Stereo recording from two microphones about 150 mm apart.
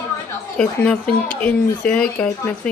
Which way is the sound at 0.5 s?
5° left (ahead or behind).